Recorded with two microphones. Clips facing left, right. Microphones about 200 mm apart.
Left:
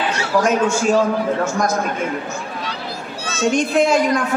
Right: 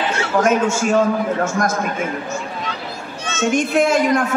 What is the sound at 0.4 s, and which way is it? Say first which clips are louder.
Speech: right 1 dB; 50° right (ahead or behind).